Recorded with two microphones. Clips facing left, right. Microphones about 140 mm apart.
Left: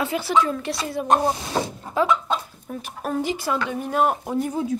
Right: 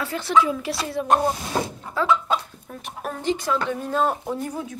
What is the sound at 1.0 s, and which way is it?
Speech, 20° left (ahead or behind).